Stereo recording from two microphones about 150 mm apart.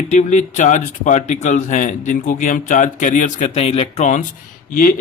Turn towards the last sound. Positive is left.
turn(degrees=65)  # may be behind; listen again after turning